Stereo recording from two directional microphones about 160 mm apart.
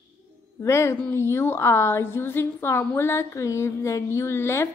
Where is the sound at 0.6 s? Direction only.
15° left (ahead or behind).